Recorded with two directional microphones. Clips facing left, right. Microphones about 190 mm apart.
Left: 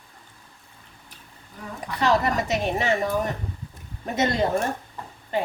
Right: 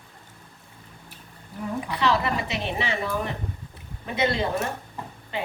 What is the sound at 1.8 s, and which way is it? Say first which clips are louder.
A woman's voice: left 3 dB; 45° left (ahead or behind).